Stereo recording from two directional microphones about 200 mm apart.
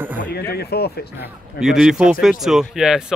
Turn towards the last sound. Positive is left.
turn(degrees=-5)  # may be behind; listen again after turning